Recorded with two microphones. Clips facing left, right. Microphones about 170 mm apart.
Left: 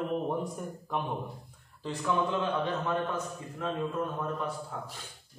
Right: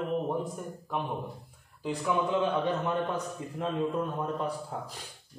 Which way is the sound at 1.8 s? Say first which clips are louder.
Right 1 dB; 15° right (ahead or behind).